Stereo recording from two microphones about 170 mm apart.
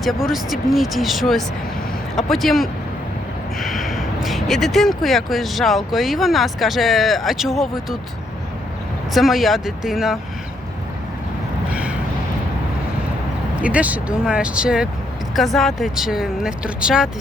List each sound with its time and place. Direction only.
0.0 s speech: centre (ahead or behind)
9.1 s speech: centre (ahead or behind)
11.7 s vehicle: 10° right (ahead or behind)
13.6 s speech: 5° right (ahead or behind)